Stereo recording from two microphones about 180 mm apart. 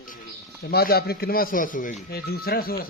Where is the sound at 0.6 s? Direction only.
60° left (ahead or behind).